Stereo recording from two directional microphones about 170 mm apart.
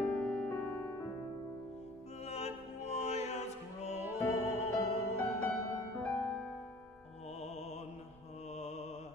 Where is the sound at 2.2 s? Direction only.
40° left (ahead or behind).